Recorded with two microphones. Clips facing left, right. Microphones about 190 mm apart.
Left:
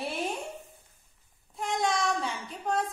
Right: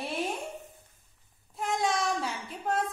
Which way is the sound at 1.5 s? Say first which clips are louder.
Even; centre (ahead or behind).